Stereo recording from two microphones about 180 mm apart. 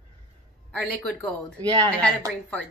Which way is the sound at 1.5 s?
25° right (ahead or behind).